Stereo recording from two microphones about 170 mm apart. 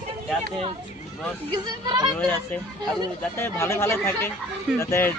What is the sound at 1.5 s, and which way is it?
Speech, 25° right (ahead or behind).